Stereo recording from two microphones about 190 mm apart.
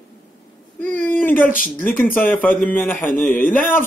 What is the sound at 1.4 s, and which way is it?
Speech, 45° left (ahead or behind).